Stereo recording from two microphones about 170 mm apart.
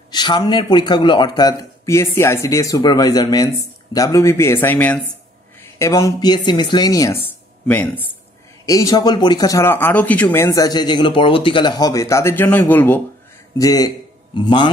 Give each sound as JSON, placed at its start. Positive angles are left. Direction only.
{"t": 0.1, "sound": "speech", "side_deg": 25}
{"t": 7.6, "sound": "speech", "side_deg": 10}
{"t": 13.6, "sound": "a man's voice", "side_deg": 20}